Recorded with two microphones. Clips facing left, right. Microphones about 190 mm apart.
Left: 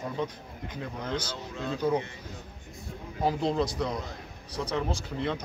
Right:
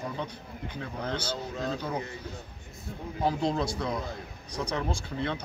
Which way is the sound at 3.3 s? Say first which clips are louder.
Left 1 dB; 5° left (ahead or behind).